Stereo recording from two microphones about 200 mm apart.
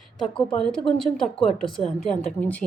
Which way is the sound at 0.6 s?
Centre (ahead or behind).